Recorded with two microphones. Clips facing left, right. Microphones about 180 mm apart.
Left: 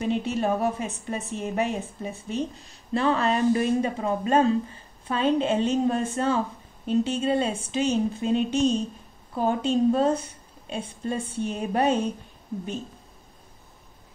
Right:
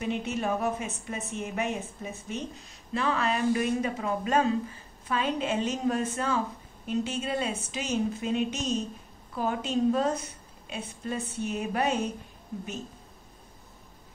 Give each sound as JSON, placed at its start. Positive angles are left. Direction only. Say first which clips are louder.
{"t": 0.0, "sound": "a woman's voice", "louder": "left 5 dB", "side_deg": 35}